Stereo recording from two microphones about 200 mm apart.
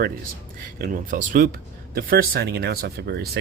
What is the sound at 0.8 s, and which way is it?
Speech, 40° right (ahead or behind).